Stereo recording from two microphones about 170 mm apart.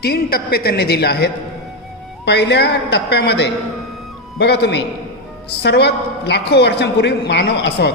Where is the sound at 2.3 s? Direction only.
80° left.